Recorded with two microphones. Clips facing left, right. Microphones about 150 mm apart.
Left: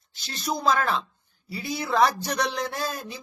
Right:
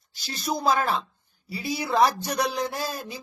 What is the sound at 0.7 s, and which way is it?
Speech, 25° right (ahead or behind).